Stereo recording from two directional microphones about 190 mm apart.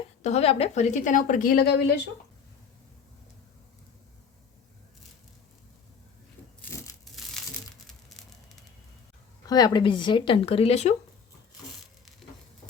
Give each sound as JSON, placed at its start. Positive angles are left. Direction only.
{"t": 0.2, "sound": "a woman's voice", "side_deg": 35}
{"t": 6.6, "sound": "a sound", "side_deg": 10}
{"t": 9.5, "sound": "speech", "side_deg": 20}